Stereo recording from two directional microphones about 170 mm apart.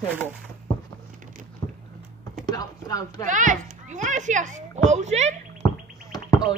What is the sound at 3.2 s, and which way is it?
A child's voice, 50° right (ahead or behind).